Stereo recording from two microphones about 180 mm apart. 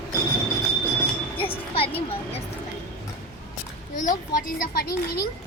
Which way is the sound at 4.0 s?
50° left (ahead or behind).